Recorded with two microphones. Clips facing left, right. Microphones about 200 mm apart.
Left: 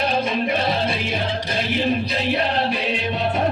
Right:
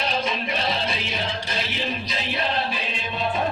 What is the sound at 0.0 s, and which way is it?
Music, 55° left (ahead or behind).